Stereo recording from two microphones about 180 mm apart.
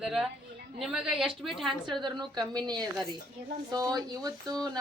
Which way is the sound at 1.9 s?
25° right (ahead or behind).